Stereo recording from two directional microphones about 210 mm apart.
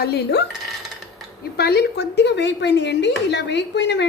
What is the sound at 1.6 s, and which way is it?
Speech, 50° left (ahead or behind).